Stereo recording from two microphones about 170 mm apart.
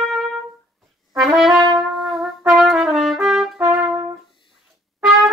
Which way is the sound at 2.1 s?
Centre (ahead or behind).